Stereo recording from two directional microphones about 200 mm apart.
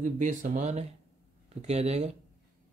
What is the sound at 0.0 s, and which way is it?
Speech, 40° right (ahead or behind).